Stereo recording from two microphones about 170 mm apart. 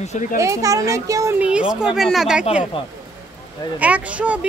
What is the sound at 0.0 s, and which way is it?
Speech, 40° left (ahead or behind).